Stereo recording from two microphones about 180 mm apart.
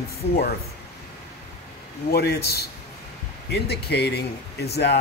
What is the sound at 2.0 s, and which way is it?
Speech, 60° left (ahead or behind).